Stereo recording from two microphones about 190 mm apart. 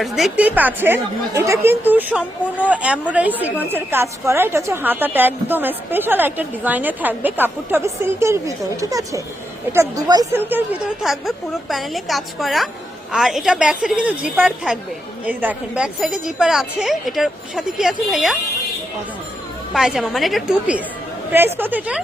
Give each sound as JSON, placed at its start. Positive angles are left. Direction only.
{"t": 0.0, "sound": "a woman's voice", "side_deg": -5}
{"t": 11.0, "sound": "a woman's voice", "side_deg": 0}
{"t": 19.7, "sound": "a woman's voice", "side_deg": -5}